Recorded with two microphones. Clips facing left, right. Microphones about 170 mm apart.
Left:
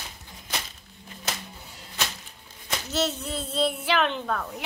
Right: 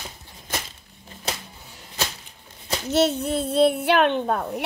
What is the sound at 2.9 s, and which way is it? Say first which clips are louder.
A child's voice: right 8 dB; 55° right (ahead or behind).